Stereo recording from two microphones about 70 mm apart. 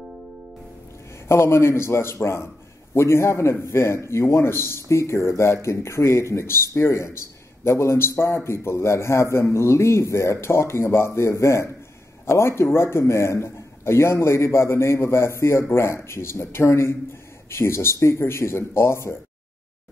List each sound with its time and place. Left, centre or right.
1.3 s a man's voice: left